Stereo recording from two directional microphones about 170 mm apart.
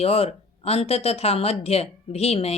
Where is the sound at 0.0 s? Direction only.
35° left (ahead or behind).